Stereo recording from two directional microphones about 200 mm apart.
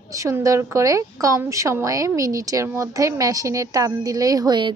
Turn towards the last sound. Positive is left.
turn(degrees=-20)  # may be behind; listen again after turning